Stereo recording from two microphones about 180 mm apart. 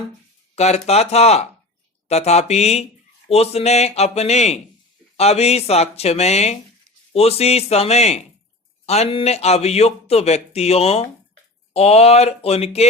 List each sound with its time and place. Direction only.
0.5 s speech: 35° left (ahead or behind)